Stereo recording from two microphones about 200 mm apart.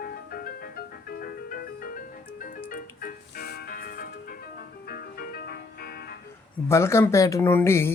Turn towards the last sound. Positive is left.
turn(degrees=10)  # may be behind; listen again after turning